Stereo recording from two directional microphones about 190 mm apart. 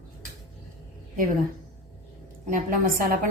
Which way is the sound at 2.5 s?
45° right (ahead or behind).